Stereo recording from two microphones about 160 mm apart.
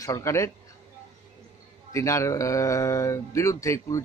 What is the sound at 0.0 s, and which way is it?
Speech, 20° left (ahead or behind).